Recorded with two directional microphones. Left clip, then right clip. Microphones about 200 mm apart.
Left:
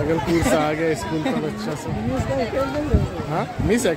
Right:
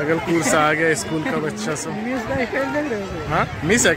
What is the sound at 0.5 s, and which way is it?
Speech, centre (ahead or behind).